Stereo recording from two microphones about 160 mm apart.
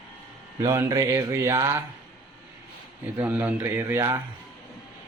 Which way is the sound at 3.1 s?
10° right (ahead or behind).